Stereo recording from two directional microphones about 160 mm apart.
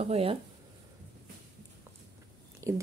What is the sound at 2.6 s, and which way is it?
Whispering, 20° right (ahead or behind).